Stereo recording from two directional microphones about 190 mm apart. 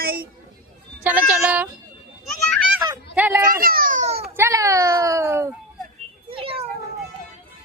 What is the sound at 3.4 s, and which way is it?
Speech, 50° right (ahead or behind).